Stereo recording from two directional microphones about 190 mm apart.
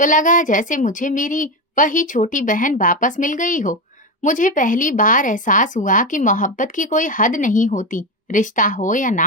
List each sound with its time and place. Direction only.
0.0 s a woman's voice: 45° left (ahead or behind)